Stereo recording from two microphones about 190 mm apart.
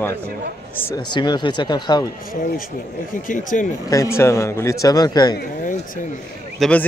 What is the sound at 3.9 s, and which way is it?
A man's voice, 15° left (ahead or behind).